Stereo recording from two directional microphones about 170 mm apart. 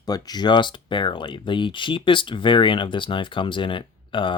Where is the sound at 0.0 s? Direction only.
25° left (ahead or behind).